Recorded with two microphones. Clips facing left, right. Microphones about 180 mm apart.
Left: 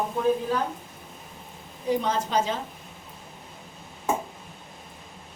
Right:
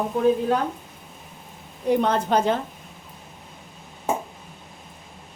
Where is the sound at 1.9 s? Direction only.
60° right (ahead or behind).